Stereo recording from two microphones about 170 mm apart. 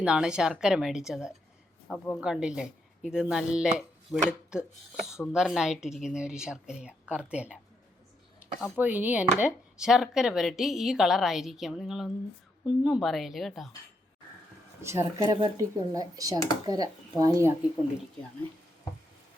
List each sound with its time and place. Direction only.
0.0 s speech: 5° right (ahead or behind)
8.8 s speech: 10° right (ahead or behind)
14.8 s speech: 15° right (ahead or behind)